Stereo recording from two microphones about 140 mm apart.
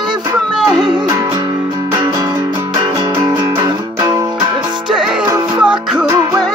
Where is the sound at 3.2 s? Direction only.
25° right (ahead or behind).